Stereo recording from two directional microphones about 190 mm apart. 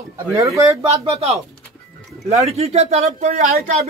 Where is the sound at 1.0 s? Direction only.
35° right (ahead or behind).